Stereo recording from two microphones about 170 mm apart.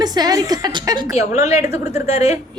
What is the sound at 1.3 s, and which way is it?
A woman's voice, 40° left (ahead or behind).